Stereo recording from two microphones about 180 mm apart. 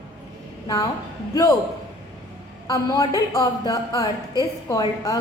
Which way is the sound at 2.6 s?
20° left (ahead or behind).